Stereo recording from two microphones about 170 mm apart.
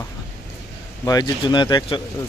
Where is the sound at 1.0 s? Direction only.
25° left (ahead or behind).